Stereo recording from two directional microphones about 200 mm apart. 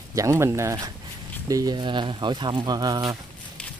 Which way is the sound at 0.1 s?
15° right (ahead or behind).